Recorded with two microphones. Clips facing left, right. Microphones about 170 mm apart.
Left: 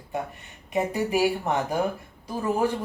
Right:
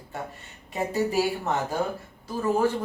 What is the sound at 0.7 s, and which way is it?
Speech, 15° left (ahead or behind).